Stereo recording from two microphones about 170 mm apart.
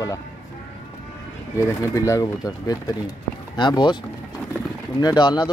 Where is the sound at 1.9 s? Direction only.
20° left (ahead or behind).